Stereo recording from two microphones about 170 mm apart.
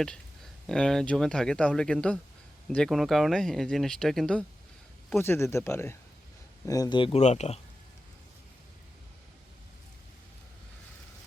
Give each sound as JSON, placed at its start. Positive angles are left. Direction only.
{"t": 0.7, "sound": "speech", "side_deg": 5}